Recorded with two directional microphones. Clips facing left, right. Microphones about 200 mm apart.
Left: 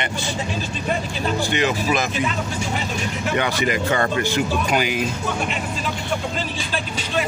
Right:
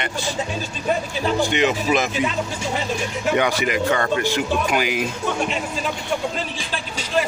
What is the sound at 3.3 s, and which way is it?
Speech, 15° right (ahead or behind).